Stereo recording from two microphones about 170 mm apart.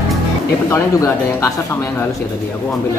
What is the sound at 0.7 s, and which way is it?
Speech, 15° left (ahead or behind).